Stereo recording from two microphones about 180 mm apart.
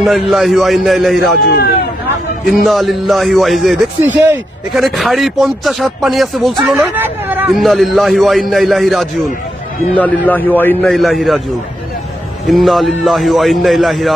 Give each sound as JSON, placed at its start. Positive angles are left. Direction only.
{"t": 0.0, "sound": "speech", "side_deg": 0}
{"t": 1.4, "sound": "speech", "side_deg": 60}
{"t": 2.4, "sound": "speech", "side_deg": 0}
{"t": 4.0, "sound": "speech", "side_deg": -10}
{"t": 4.7, "sound": "speech", "side_deg": 0}
{"t": 7.5, "sound": "speech", "side_deg": 0}
{"t": 12.4, "sound": "speech", "side_deg": 0}